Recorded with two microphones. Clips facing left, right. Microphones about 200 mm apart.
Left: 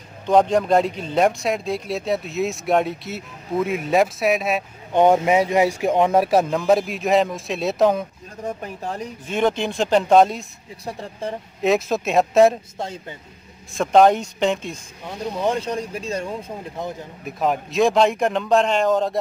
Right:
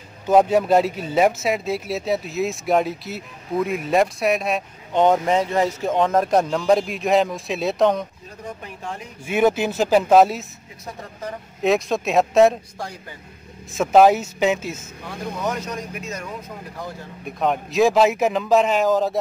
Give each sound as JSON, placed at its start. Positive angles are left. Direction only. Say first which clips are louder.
{"t": 0.3, "sound": "speech", "louder": "right 1 dB", "side_deg": -5}
{"t": 8.6, "sound": "speech", "louder": "left 3 dB", "side_deg": 40}
{"t": 9.2, "sound": "speech", "louder": "right 3 dB", "side_deg": -10}
{"t": 10.9, "sound": "speech", "louder": "left 4 dB", "side_deg": 30}
{"t": 11.6, "sound": "speech", "louder": "even", "side_deg": 0}
{"t": 12.7, "sound": "speech", "louder": "left 3 dB", "side_deg": 25}
{"t": 13.7, "sound": "speech", "louder": "right 1 dB", "side_deg": -5}
{"t": 15.0, "sound": "speech", "louder": "left 3 dB", "side_deg": 30}
{"t": 17.2, "sound": "speech", "louder": "even", "side_deg": 0}